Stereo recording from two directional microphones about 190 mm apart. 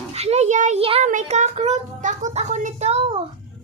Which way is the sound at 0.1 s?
35° right (ahead or behind).